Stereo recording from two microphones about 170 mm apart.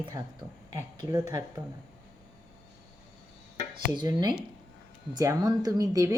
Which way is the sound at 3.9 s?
25° right (ahead or behind).